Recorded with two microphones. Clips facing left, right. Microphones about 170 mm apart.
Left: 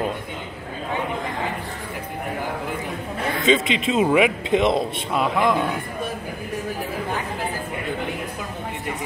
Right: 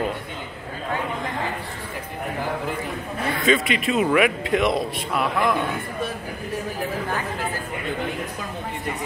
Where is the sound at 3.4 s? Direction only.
25° left (ahead or behind).